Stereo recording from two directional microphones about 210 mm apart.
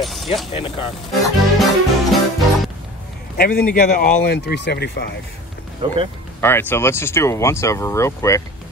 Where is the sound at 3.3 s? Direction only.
45° left (ahead or behind).